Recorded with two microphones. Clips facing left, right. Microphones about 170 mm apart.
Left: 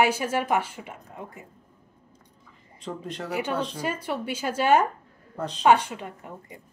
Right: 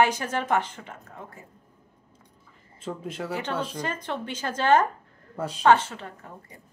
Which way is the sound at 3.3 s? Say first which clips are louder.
Left 3 dB; 10° left (ahead or behind).